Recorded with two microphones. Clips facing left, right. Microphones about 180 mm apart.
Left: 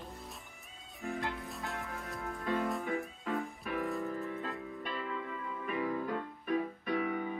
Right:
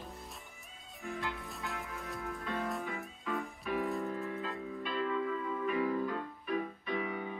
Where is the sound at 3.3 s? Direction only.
Centre (ahead or behind).